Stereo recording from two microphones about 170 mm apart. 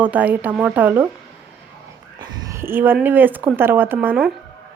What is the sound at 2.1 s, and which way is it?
Speech, 25° right (ahead or behind).